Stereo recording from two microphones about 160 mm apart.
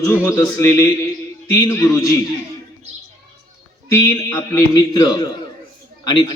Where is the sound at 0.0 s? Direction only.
15° left (ahead or behind).